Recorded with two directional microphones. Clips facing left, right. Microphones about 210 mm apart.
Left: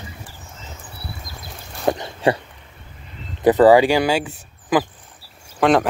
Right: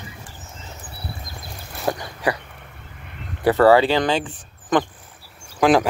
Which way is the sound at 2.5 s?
60° right (ahead or behind).